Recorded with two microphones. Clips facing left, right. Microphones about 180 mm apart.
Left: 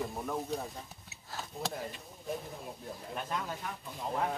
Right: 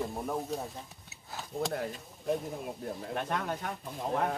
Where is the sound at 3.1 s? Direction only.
70° right (ahead or behind).